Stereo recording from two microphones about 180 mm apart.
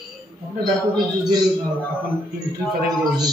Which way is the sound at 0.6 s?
25° right (ahead or behind).